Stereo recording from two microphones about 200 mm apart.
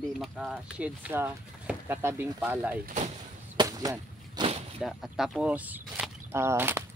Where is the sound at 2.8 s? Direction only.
40° right (ahead or behind).